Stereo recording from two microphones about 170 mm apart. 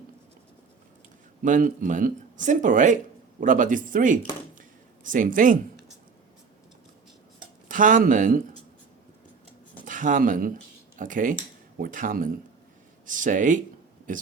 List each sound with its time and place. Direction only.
1.4 s speech: 50° right (ahead or behind)
7.7 s speech: 50° right (ahead or behind)
9.8 s speech: 50° right (ahead or behind)